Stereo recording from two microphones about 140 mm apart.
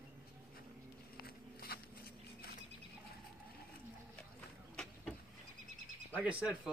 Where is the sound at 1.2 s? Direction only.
90° left.